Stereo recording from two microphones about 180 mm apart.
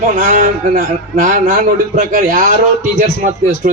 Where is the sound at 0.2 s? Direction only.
50° right (ahead or behind).